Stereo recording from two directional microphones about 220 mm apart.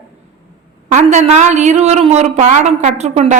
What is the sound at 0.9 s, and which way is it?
A woman's voice, 30° right (ahead or behind).